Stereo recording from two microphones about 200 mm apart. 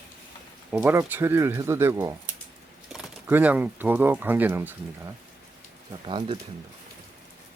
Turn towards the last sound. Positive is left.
turn(degrees=-25)  # may be behind; listen again after turning